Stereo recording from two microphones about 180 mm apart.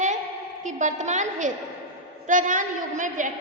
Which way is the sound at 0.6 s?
45° right (ahead or behind).